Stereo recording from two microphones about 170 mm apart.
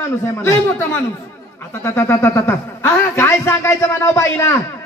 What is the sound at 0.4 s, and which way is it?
Speech, 15° left (ahead or behind).